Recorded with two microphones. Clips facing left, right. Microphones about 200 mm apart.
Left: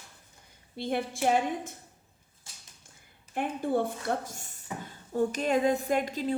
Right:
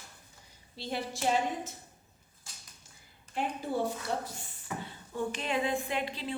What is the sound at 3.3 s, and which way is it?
A woman's voice, 55° left (ahead or behind).